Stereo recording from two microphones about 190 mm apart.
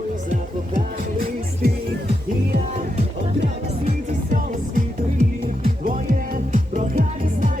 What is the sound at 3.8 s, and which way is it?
Music, 45° right (ahead or behind).